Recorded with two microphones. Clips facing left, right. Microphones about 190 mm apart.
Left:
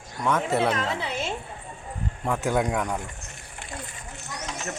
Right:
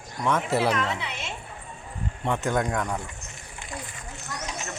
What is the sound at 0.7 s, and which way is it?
Speech, 35° left (ahead or behind).